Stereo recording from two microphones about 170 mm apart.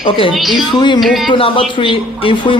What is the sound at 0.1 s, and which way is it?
Speech, 30° left (ahead or behind).